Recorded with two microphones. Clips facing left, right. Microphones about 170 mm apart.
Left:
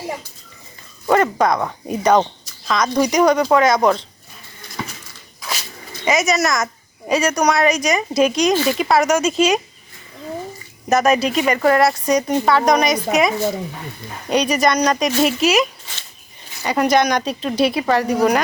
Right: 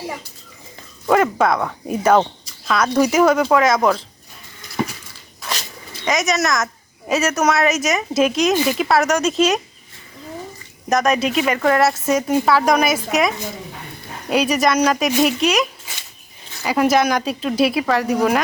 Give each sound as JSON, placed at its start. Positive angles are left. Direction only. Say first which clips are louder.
{"t": 1.0, "sound": "speech", "louder": "even", "side_deg": -5}
{"t": 6.1, "sound": "speech", "louder": "left 2 dB", "side_deg": 0}
{"t": 8.5, "sound": "speech", "louder": "even", "side_deg": -15}
{"t": 8.8, "sound": "speech", "louder": "left 1 dB", "side_deg": 0}
{"t": 10.8, "sound": "speech", "louder": "left 2 dB", "side_deg": 5}
{"t": 16.6, "sound": "speech", "louder": "even", "side_deg": -5}